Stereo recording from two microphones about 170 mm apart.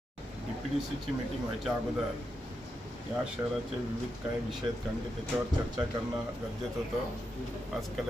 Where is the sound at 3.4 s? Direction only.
20° right (ahead or behind).